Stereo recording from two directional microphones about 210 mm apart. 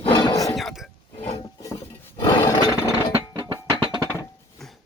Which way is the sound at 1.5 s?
15° left (ahead or behind).